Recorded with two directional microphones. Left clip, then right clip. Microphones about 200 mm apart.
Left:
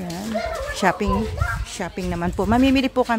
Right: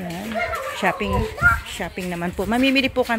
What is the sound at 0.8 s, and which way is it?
Speech, 15° left (ahead or behind).